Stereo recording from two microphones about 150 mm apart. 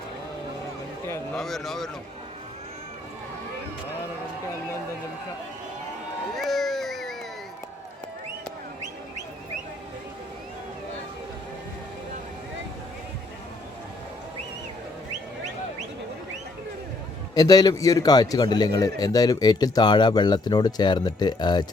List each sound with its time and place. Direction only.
1.4 s speech: centre (ahead or behind)
6.3 s a sound: centre (ahead or behind)
17.3 s a man's voice: 25° left (ahead or behind)